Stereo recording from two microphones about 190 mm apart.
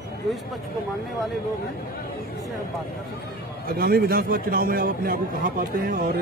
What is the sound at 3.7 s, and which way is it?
Speech, 50° right (ahead or behind).